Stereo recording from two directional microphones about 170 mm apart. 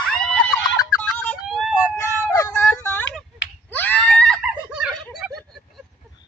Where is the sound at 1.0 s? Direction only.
10° left (ahead or behind).